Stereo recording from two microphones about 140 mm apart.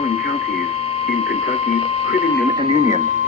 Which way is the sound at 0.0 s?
45° left (ahead or behind).